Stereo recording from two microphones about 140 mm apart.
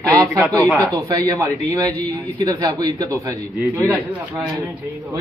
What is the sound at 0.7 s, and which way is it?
A man's voice, 25° right (ahead or behind).